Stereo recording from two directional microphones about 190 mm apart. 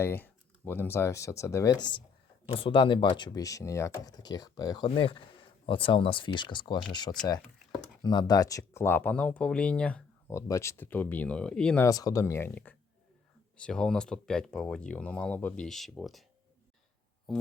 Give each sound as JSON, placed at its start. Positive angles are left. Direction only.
{"t": 0.0, "sound": "speech", "side_deg": 10}
{"t": 11.9, "sound": "speech", "side_deg": 20}
{"t": 17.3, "sound": "a sound", "side_deg": 0}